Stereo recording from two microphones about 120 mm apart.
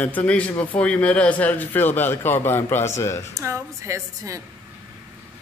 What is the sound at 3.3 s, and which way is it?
A woman's voice, 25° right (ahead or behind).